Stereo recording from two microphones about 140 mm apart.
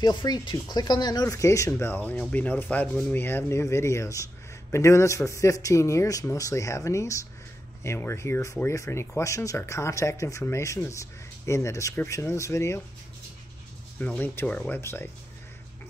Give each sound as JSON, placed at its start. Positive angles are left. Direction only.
{"t": 0.0, "sound": "speech", "side_deg": 30}
{"t": 13.9, "sound": "speech", "side_deg": 10}